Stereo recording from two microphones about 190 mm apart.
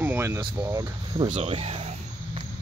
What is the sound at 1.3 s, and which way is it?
Cricket, 30° right (ahead or behind).